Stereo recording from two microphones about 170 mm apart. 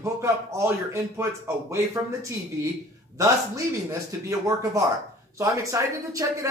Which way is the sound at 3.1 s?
20° right (ahead or behind).